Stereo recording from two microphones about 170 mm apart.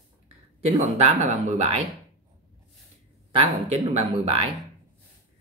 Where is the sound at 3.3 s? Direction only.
35° right (ahead or behind).